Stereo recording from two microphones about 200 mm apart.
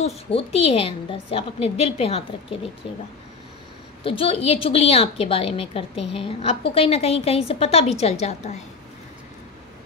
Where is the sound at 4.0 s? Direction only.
25° left (ahead or behind).